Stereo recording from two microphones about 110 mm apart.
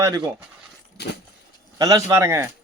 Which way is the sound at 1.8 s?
35° right (ahead or behind).